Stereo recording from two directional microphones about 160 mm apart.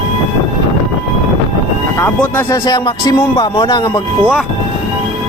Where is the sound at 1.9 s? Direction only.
15° left (ahead or behind).